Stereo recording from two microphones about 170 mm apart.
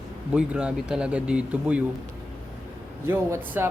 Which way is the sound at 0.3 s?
5° right (ahead or behind).